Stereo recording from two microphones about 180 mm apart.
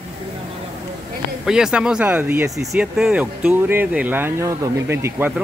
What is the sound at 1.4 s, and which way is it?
Speech, 5° right (ahead or behind).